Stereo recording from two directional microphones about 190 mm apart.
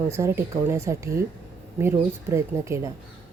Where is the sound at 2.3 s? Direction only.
15° right (ahead or behind).